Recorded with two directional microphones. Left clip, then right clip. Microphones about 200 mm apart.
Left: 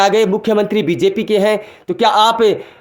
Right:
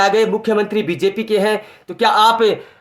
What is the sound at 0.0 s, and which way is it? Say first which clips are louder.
Speech: left 2 dB; 35° left (ahead or behind).